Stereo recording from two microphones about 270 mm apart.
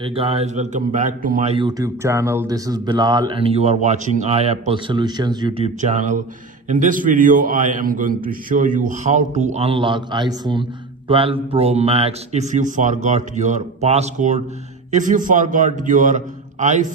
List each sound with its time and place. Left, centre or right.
0.0 s a man's voice: right